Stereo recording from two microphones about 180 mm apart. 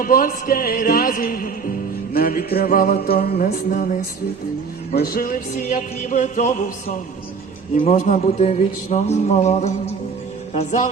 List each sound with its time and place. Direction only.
0.0 s music: 50° left (ahead or behind)
7.8 s music: 45° left (ahead or behind)